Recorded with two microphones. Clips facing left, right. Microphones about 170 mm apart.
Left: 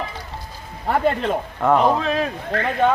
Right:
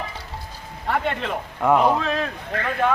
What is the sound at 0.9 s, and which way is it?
Speech, 30° left (ahead or behind).